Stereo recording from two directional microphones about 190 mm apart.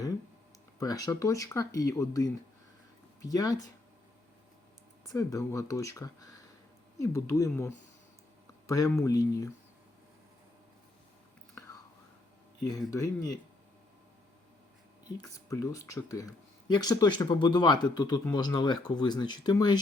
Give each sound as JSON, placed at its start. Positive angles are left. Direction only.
{"t": 0.8, "sound": "speech", "side_deg": 20}
{"t": 5.0, "sound": "speech", "side_deg": 20}
{"t": 12.9, "sound": "speech", "side_deg": 15}
{"t": 15.4, "sound": "speech", "side_deg": 15}